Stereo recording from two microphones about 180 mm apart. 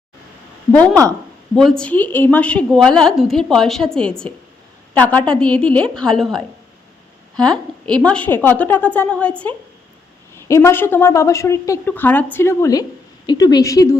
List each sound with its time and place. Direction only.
1.5 s a woman's voice: 5° left (ahead or behind)